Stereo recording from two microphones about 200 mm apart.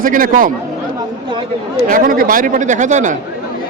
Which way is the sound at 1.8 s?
45° right (ahead or behind).